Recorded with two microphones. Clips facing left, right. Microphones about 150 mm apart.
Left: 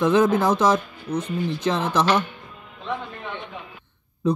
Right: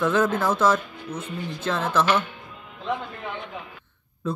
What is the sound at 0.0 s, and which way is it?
Speech, 15° left (ahead or behind).